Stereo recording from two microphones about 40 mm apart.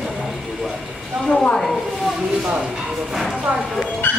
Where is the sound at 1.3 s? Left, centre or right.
Left.